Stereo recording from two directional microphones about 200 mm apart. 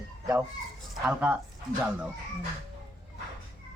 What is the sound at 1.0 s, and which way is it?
Speech, 5° right (ahead or behind).